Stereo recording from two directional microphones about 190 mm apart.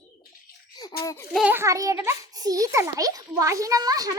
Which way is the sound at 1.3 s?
5° right (ahead or behind).